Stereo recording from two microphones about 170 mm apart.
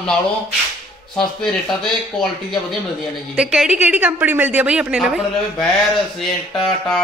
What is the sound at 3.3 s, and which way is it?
A woman's voice, 5° right (ahead or behind).